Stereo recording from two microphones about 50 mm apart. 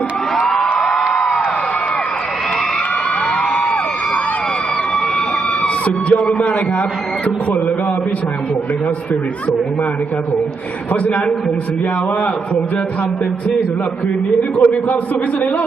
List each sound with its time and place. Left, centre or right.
0.3 s music: centre
5.6 s a man's voice: left
14.5 s a man's voice: left